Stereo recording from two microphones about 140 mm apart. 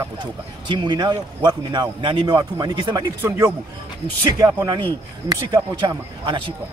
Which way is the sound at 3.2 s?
15° right (ahead or behind).